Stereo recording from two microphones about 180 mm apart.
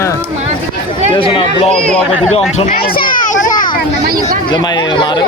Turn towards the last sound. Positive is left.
turn(degrees=25)  # may be behind; listen again after turning